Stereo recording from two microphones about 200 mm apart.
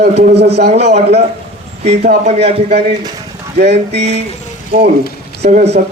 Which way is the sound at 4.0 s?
35° right (ahead or behind).